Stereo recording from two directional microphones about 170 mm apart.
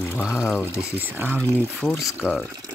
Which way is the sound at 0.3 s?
15° left (ahead or behind).